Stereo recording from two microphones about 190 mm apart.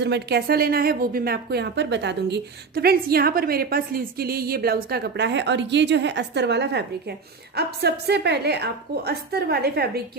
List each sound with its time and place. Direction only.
0.0 s speech: 60° right (ahead or behind)